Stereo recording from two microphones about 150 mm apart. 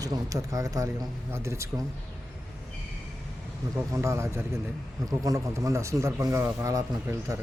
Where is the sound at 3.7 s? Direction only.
25° right (ahead or behind).